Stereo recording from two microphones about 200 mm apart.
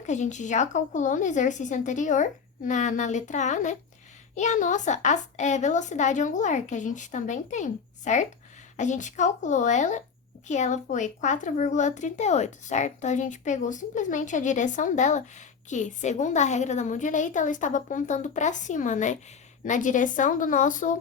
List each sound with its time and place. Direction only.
0.0 s speech: 35° left (ahead or behind)